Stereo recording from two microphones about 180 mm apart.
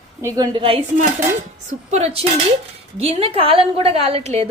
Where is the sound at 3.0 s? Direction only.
30° right (ahead or behind).